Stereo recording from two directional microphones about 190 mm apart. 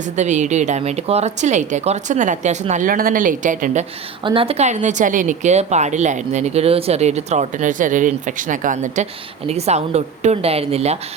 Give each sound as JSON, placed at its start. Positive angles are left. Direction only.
{"t": 0.2, "sound": "a woman's voice", "side_deg": -40}
{"t": 4.2, "sound": "a woman's voice", "side_deg": -25}